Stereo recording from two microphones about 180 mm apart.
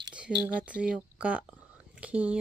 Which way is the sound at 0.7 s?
5° right (ahead or behind).